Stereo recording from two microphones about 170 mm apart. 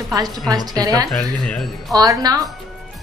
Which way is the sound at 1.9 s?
20° right (ahead or behind).